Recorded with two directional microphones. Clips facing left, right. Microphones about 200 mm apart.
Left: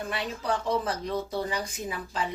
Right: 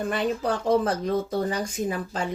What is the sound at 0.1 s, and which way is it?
Speech, 50° right (ahead or behind).